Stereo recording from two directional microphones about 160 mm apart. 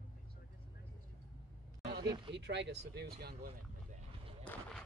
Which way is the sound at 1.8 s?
80° right.